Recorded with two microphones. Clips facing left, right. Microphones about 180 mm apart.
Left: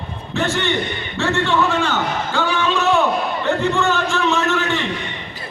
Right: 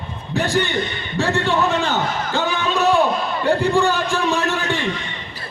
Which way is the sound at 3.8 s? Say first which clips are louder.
Even; 35° right (ahead or behind).